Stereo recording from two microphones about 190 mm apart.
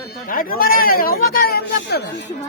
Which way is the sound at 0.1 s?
50° left (ahead or behind).